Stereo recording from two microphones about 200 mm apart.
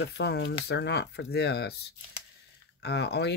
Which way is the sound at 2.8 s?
55° left (ahead or behind).